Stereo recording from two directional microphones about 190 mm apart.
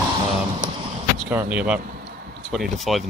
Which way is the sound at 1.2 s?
10° right (ahead or behind).